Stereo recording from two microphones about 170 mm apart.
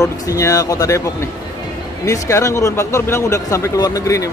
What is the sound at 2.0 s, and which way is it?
Speech, 20° left (ahead or behind).